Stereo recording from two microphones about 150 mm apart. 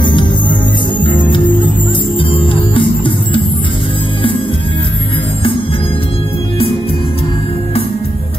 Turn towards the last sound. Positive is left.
turn(degrees=40)  # may be behind; listen again after turning